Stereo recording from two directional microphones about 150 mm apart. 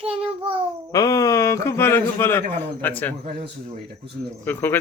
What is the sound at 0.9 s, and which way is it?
A man's voice, 25° left (ahead or behind).